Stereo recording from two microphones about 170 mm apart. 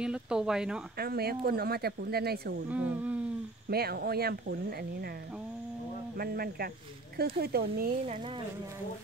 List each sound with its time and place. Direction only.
0.0 s speech: 5° right (ahead or behind)
0.9 s speech: 65° right (ahead or behind)
2.7 s speech: 10° right (ahead or behind)
3.7 s speech: 65° right (ahead or behind)
6.1 s speech: 60° right (ahead or behind)